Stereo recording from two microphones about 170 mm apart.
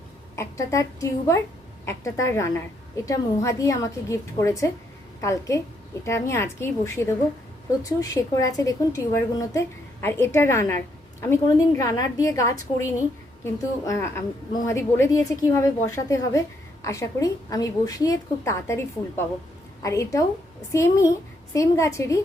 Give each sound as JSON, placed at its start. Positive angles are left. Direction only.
{"t": 0.3, "sound": "a woman's voice", "side_deg": 20}
{"t": 19.8, "sound": "a woman's voice", "side_deg": 20}